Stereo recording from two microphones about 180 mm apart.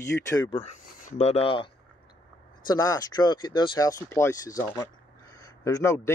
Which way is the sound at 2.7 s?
20° left (ahead or behind).